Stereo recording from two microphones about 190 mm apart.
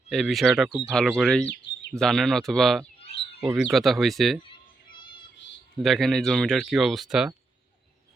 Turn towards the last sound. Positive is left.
turn(degrees=-5)  # may be behind; listen again after turning